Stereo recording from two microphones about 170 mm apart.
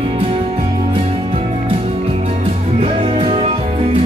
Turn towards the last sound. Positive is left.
turn(degrees=-30)  # may be behind; listen again after turning